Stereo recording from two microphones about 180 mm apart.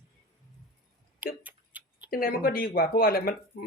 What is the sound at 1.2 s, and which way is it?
Tick-tock, 10° right (ahead or behind).